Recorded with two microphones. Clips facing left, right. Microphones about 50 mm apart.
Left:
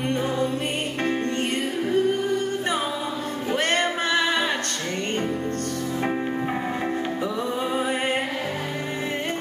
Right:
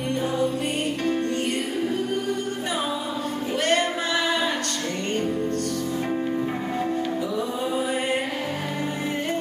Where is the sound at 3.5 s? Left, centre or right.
Left.